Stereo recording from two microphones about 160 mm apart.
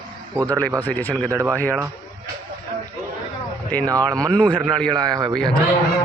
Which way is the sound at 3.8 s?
20° right (ahead or behind).